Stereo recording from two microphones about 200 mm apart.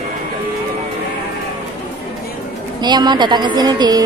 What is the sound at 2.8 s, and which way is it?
A woman's voice, 20° right (ahead or behind).